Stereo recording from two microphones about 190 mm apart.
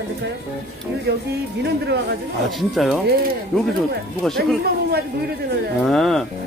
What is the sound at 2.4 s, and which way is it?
Speech, centre (ahead or behind).